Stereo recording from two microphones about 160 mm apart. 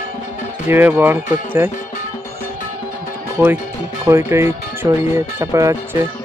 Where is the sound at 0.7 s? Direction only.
15° right (ahead or behind).